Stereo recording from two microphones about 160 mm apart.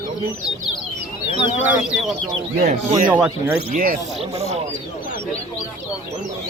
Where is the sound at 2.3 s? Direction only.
40° right (ahead or behind).